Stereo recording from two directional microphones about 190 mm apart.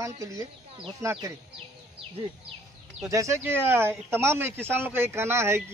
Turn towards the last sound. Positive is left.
turn(degrees=-15)  # may be behind; listen again after turning